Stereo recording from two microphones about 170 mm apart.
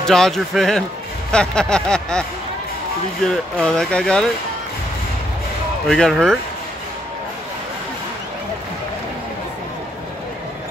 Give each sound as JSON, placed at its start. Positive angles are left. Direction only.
{"t": 0.0, "sound": "speech", "side_deg": 5}
{"t": 3.3, "sound": "speech", "side_deg": 5}
{"t": 5.9, "sound": "speech", "side_deg": 5}